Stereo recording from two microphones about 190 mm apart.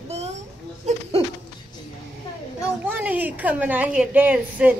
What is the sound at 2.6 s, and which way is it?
A woman's voice, 10° right (ahead or behind).